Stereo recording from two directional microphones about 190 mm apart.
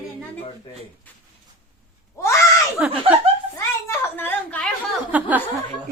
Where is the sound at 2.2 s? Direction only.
15° left (ahead or behind).